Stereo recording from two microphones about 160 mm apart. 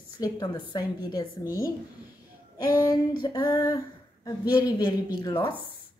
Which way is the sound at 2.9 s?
30° left (ahead or behind).